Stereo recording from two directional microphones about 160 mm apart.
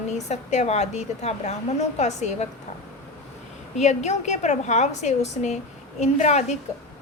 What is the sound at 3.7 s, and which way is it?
A woman's voice, 45° left (ahead or behind).